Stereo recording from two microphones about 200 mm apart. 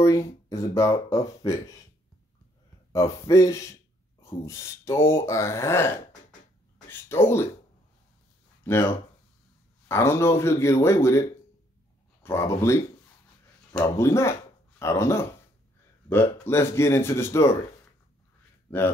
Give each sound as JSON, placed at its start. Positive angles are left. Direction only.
{"t": 0.0, "sound": "speech", "side_deg": 15}
{"t": 2.9, "sound": "speech", "side_deg": 15}
{"t": 8.6, "sound": "speech", "side_deg": 10}
{"t": 18.7, "sound": "a man's voice", "side_deg": 10}